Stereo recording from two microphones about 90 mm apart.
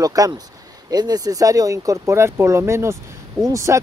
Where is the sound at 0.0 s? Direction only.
40° right (ahead or behind).